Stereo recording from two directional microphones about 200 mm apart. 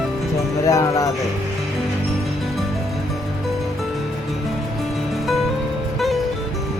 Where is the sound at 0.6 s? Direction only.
15° left (ahead or behind).